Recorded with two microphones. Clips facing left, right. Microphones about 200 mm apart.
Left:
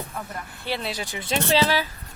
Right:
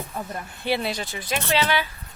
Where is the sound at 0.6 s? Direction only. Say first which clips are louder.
Right 5 dB; 15° right (ahead or behind).